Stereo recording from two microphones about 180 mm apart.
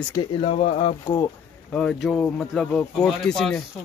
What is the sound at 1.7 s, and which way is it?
Speech, 5° left (ahead or behind).